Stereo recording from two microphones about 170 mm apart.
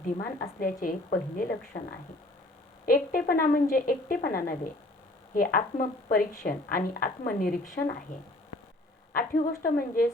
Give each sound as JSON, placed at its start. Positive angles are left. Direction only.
{"t": 0.2, "sound": "a woman's voice", "side_deg": 60}
{"t": 2.8, "sound": "a woman's voice", "side_deg": 55}
{"t": 9.4, "sound": "a woman's voice", "side_deg": 55}